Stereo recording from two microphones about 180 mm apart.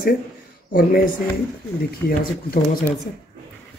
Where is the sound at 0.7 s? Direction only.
55° left (ahead or behind).